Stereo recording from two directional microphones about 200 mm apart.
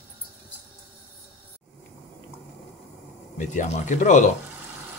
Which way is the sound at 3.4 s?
40° left (ahead or behind).